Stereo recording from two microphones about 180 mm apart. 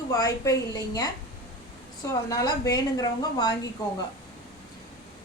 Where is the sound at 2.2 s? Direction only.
20° left (ahead or behind).